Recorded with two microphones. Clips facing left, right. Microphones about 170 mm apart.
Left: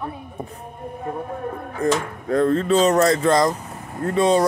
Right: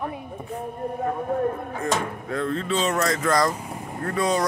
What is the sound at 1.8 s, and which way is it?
Speech, 35° left (ahead or behind).